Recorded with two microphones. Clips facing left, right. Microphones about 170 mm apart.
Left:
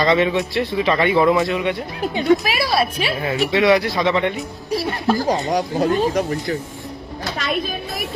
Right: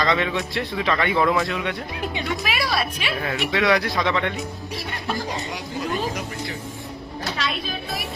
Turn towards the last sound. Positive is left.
turn(degrees=50)  # may be behind; listen again after turning